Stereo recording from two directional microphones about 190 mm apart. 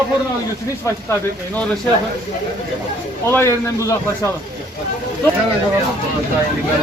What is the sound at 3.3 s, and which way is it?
Speech, 15° left (ahead or behind).